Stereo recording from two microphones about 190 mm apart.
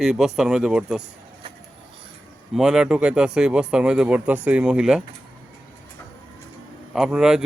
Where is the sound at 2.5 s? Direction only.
5° right (ahead or behind).